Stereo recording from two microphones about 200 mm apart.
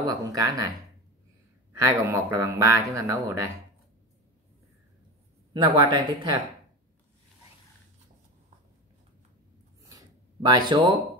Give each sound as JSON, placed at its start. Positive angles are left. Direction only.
{"t": 0.0, "sound": "a man's voice", "side_deg": -20}
{"t": 1.7, "sound": "a man's voice", "side_deg": -15}
{"t": 5.5, "sound": "speech", "side_deg": -25}
{"t": 9.8, "sound": "a sound", "side_deg": -20}